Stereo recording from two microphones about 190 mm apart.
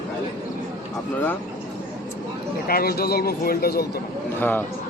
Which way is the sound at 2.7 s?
55° left (ahead or behind).